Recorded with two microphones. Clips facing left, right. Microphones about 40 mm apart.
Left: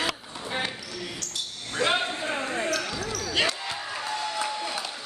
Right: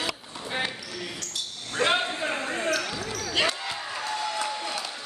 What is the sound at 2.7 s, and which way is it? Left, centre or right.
Basketball bounce, centre.